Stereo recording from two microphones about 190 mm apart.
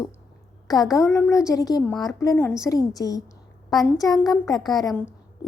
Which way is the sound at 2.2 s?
15° left (ahead or behind).